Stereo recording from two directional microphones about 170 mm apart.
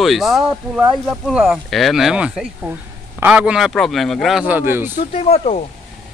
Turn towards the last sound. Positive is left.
turn(degrees=35)  # may be behind; listen again after turning